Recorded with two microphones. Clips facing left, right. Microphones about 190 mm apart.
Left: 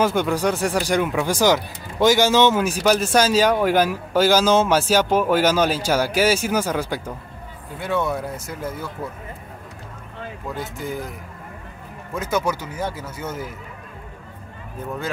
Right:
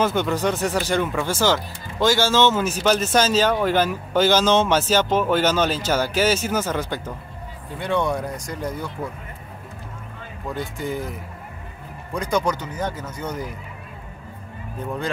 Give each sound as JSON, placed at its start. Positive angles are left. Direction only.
{"t": 0.0, "sound": "speech", "side_deg": 10}
{"t": 10.5, "sound": "speech", "side_deg": 0}